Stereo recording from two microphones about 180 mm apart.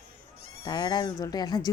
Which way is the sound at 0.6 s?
20° left (ahead or behind).